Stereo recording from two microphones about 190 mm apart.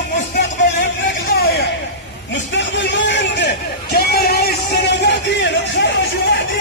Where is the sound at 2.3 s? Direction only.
70° left (ahead or behind).